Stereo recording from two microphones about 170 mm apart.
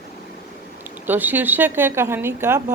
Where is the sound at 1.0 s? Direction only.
10° right (ahead or behind).